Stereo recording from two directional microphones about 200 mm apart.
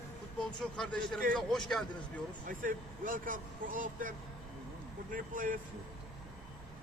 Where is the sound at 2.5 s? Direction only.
45° right (ahead or behind).